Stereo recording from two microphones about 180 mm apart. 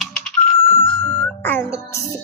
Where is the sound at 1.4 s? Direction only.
15° left (ahead or behind).